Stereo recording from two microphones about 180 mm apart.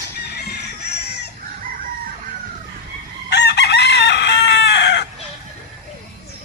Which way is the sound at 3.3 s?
70° left (ahead or behind).